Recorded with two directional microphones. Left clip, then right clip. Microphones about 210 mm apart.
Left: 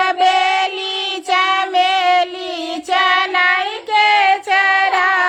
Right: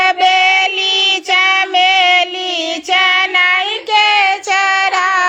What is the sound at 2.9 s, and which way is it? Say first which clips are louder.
Child singing: right 3 dB; 20° left (ahead or behind).